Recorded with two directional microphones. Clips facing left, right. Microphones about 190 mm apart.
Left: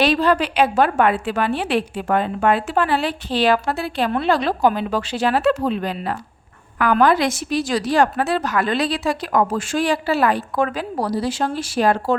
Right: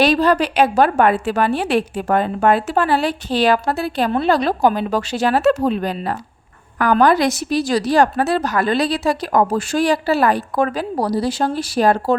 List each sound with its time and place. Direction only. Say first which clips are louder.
0.0 s a woman's voice: right 2 dB; 40° right (ahead or behind)